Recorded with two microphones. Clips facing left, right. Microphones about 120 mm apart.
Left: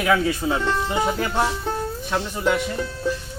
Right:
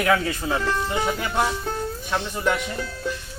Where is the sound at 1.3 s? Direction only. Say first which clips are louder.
Left 1 dB; 5° left (ahead or behind).